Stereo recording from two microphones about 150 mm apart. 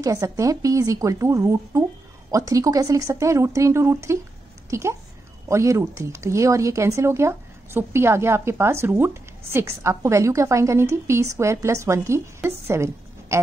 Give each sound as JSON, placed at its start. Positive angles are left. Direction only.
{"t": 0.0, "sound": "a child's voice", "side_deg": -20}